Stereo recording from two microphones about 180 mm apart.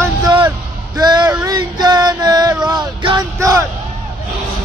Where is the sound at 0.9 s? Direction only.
25° right (ahead or behind).